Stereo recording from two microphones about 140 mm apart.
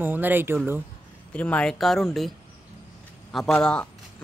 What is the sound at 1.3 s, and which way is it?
Speech, 10° left (ahead or behind).